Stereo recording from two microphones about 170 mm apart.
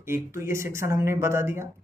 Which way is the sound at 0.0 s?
15° right (ahead or behind).